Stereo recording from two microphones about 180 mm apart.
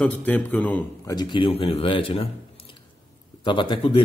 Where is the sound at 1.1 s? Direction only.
25° left (ahead or behind).